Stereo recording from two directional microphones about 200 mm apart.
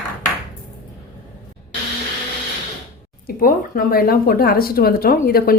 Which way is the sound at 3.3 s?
45° left (ahead or behind).